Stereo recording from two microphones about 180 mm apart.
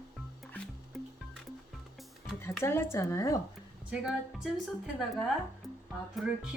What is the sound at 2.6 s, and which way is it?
Speech, 15° left (ahead or behind).